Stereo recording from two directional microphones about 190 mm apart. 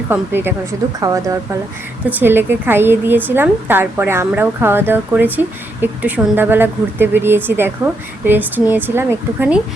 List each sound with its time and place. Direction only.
0.1 s a woman's voice: 10° right (ahead or behind)